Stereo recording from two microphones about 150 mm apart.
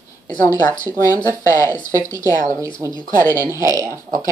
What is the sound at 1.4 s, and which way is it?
Speech, 15° left (ahead or behind).